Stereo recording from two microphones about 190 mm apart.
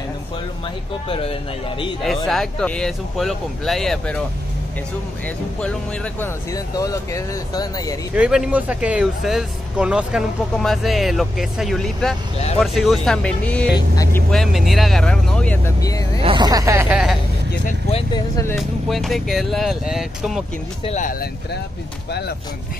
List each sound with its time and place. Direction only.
1.0 s speech: 30° left (ahead or behind)
2.0 s speech: centre (ahead or behind)
5.6 s speech: 10° left (ahead or behind)
8.1 s speech: 5° right (ahead or behind)
13.7 s speech: 20° left (ahead or behind)
14.3 s speech: centre (ahead or behind); by 16.1 s 20° left (ahead or behind)
16.2 s speech: 25° right (ahead or behind)
16.9 s speech: centre (ahead or behind)
17.6 s vehicle: 35° left (ahead or behind)
18.1 s speech: 15° left (ahead or behind)
18.6 s speech: centre (ahead or behind)
20.8 s speech: 40° left (ahead or behind)